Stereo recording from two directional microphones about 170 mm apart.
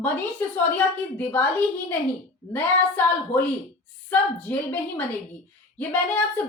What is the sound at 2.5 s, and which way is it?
Speech, 10° left (ahead or behind).